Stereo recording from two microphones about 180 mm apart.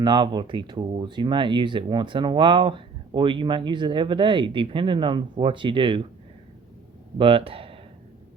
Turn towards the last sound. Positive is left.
turn(degrees=-30)  # may be behind; listen again after turning